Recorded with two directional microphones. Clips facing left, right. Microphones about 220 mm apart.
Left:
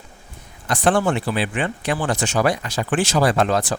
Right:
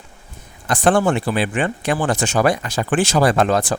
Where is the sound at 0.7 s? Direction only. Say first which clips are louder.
Right 3 dB; 50° right (ahead or behind).